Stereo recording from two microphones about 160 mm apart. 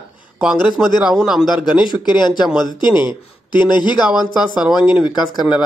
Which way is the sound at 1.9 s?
25° left (ahead or behind).